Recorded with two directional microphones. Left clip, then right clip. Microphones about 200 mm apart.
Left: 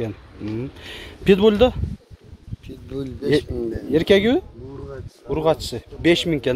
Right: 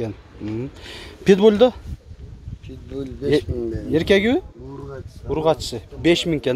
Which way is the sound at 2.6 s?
40° left (ahead or behind).